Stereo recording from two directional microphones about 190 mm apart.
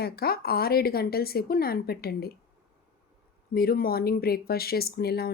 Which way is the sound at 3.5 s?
50° left (ahead or behind).